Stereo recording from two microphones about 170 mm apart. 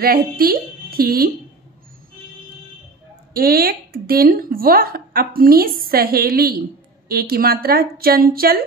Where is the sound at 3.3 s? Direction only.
60° right (ahead or behind).